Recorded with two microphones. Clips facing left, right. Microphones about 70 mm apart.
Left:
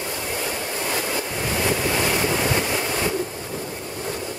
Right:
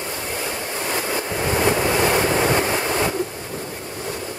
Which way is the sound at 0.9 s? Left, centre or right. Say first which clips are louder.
Right 2 dB; right.